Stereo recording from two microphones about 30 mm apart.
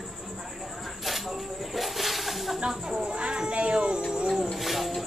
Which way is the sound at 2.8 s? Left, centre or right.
Right.